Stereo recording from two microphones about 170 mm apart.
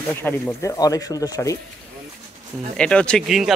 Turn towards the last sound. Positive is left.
turn(degrees=0)  # may be behind; listen again after turning